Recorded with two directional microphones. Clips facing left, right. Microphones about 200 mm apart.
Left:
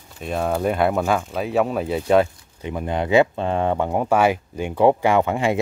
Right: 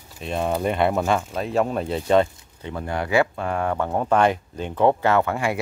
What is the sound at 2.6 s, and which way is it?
Speech, 20° left (ahead or behind).